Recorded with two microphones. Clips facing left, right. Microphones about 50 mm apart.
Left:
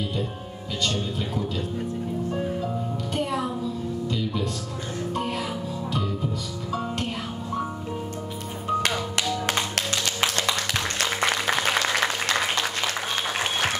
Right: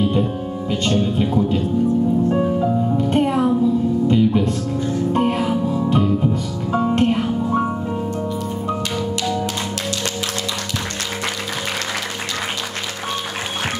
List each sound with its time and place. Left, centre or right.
0.0 s music: right